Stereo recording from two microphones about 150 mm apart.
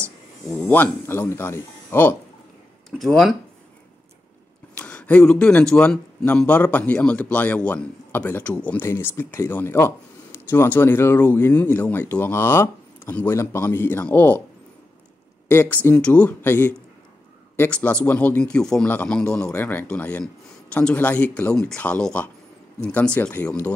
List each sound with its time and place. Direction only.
0.5 s speech: 10° left (ahead or behind)
3.0 s speech: centre (ahead or behind)
4.7 s speech: 10° left (ahead or behind)
15.4 s speech: 15° left (ahead or behind)